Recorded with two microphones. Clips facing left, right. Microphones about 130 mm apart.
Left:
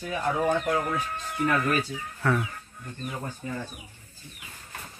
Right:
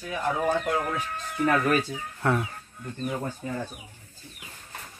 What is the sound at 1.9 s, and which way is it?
Speech, 25° right (ahead or behind).